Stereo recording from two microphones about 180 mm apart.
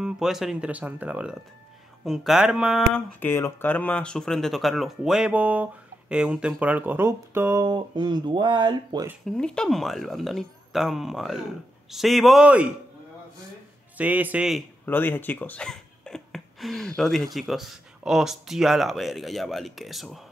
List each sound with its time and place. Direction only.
0.0 s speech: centre (ahead or behind)
3.2 s speech: 15° left (ahead or behind); by 7.6 s 15° right (ahead or behind)
7.6 s speech: 25° right (ahead or behind)
9.2 s speech: 5° left (ahead or behind)
13.9 s a man's voice: 10° right (ahead or behind)
14.9 s speech: 10° left (ahead or behind)